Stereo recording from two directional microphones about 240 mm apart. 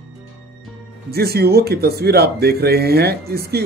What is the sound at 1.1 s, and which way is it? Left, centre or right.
Speech, right.